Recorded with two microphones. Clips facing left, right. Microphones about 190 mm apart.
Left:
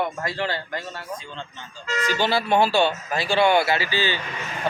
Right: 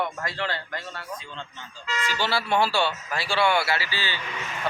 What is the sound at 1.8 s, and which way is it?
Speech, 40° left (ahead or behind).